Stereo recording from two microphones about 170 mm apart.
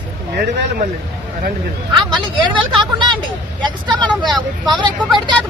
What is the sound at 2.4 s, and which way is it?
Speech, 25° right (ahead or behind).